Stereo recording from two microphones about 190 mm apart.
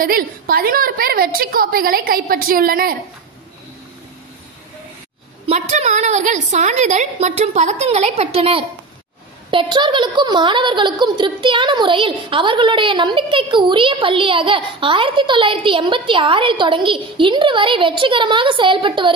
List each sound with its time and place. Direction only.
0.0 s a woman's voice: 50° right (ahead or behind)
5.5 s a woman's voice: 35° right (ahead or behind)